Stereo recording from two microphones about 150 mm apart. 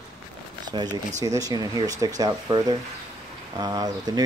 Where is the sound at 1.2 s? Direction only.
20° right (ahead or behind).